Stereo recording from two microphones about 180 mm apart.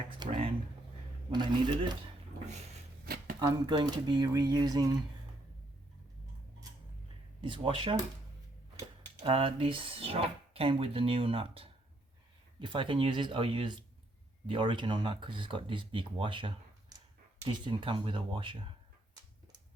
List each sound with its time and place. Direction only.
0.2 s a sound: 25° right (ahead or behind)
1.3 s speech: 25° right (ahead or behind)
3.0 s a sound: 55° right (ahead or behind)
3.4 s speech: 20° right (ahead or behind)
7.4 s speech: 25° right (ahead or behind)
9.2 s speech: 30° right (ahead or behind)